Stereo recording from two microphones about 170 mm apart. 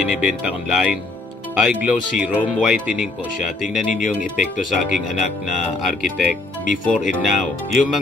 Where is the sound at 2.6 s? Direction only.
5° right (ahead or behind).